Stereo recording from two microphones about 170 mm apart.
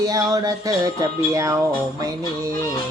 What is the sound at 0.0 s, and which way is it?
Music, 20° right (ahead or behind).